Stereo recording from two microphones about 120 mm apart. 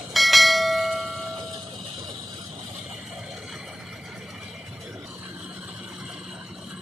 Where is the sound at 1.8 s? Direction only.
40° right (ahead or behind).